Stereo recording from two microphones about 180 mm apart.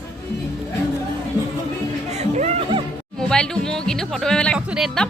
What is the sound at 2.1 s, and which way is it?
Music, 35° right (ahead or behind).